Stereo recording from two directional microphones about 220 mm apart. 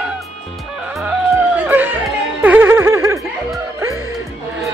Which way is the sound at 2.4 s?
10° right (ahead or behind).